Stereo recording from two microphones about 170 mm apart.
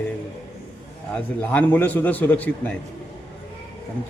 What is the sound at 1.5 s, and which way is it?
A man's voice, 10° left (ahead or behind).